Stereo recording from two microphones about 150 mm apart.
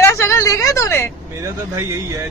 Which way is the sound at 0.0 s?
20° left (ahead or behind).